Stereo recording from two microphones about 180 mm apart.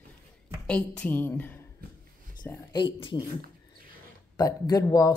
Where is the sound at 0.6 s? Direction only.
10° left (ahead or behind).